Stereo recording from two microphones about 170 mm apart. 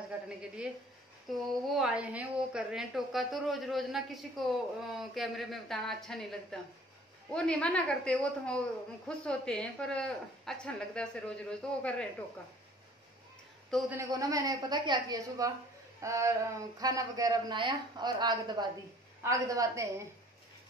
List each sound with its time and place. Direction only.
0.1 s a sound: 10° right (ahead or behind)
1.3 s a woman's voice: centre (ahead or behind)
13.7 s a woman's voice: centre (ahead or behind)
14.1 s speech: 20° right (ahead or behind)